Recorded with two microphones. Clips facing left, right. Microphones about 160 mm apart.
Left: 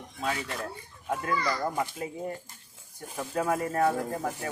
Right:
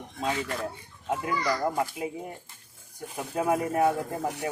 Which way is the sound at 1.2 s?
15° right (ahead or behind).